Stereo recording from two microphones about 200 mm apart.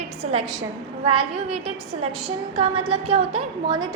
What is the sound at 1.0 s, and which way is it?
A woman's voice, 30° right (ahead or behind).